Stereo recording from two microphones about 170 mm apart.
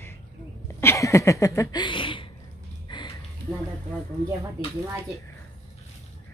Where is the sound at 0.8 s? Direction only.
15° left (ahead or behind).